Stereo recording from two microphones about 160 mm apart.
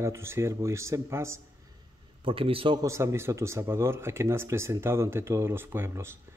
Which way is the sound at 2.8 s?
15° right (ahead or behind).